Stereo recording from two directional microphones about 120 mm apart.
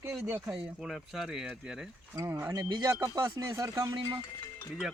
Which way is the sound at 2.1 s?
30° right (ahead or behind).